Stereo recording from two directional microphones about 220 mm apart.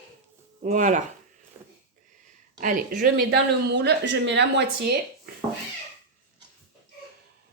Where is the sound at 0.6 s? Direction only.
35° right (ahead or behind).